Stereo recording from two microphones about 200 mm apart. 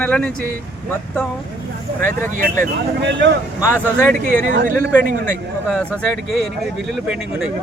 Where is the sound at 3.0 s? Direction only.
60° right (ahead or behind).